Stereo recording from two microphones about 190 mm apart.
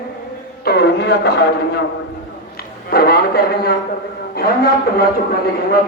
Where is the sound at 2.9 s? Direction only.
55° left (ahead or behind).